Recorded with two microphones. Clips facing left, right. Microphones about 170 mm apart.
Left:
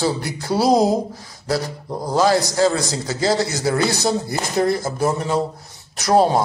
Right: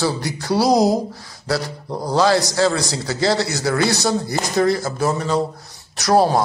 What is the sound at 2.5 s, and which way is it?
Speech, 15° left (ahead or behind).